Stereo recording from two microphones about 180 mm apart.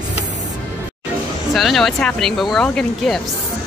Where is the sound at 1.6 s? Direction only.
Centre (ahead or behind).